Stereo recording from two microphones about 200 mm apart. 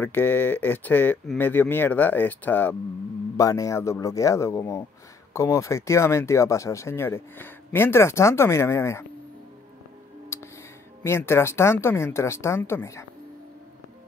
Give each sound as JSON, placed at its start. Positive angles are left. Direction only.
{"t": 0.0, "sound": "speech", "side_deg": 10}
{"t": 10.3, "sound": "music", "side_deg": 15}
{"t": 11.1, "sound": "speech", "side_deg": 10}